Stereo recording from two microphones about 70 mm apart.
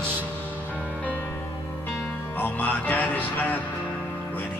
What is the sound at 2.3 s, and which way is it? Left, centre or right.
Music, left.